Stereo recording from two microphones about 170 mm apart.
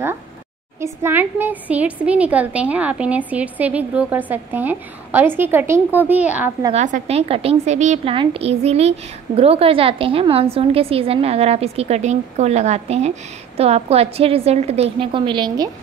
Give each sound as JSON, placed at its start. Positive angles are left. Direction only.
{"t": 1.0, "sound": "a woman's voice", "side_deg": -10}
{"t": 6.7, "sound": "a woman's voice", "side_deg": -40}